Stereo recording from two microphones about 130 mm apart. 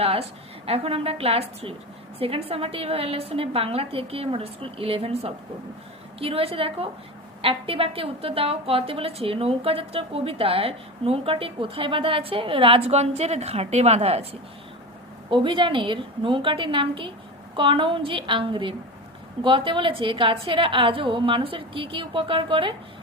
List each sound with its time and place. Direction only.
0.0 s a woman's voice: 50° right (ahead or behind)
15.3 s a woman's voice: 40° right (ahead or behind)